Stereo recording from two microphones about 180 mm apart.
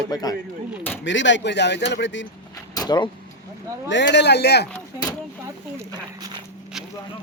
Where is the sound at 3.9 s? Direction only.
75° left (ahead or behind).